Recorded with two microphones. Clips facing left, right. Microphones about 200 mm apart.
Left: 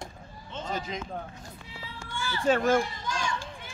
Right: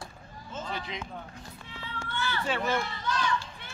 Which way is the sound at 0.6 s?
45° left (ahead or behind).